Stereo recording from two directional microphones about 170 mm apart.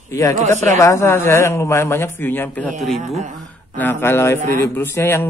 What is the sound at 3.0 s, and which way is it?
Speech, 45° right (ahead or behind).